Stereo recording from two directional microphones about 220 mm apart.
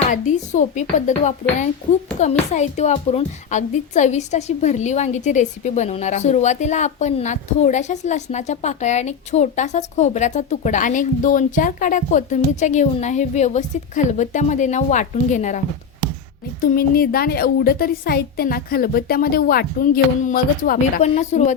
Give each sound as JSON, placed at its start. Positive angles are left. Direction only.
{"t": 0.1, "sound": "a woman's voice", "side_deg": 35}
{"t": 2.5, "sound": "a woman's voice", "side_deg": 30}
{"t": 16.7, "sound": "a woman's voice", "side_deg": 45}